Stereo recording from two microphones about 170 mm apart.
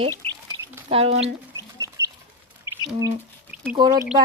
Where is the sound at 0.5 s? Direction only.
25° right (ahead or behind).